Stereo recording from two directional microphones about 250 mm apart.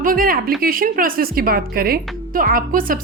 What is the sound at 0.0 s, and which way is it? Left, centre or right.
A woman's voice, right.